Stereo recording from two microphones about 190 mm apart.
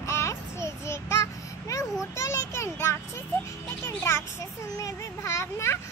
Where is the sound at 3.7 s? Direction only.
15° left (ahead or behind).